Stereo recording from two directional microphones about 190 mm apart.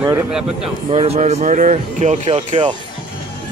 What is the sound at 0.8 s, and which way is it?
Speech, 35° right (ahead or behind).